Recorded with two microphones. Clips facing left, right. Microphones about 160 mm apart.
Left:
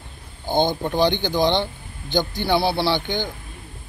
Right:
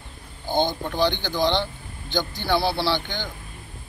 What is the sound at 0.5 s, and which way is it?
Speech, 20° left (ahead or behind).